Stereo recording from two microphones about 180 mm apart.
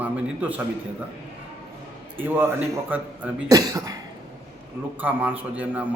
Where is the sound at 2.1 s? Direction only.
10° right (ahead or behind).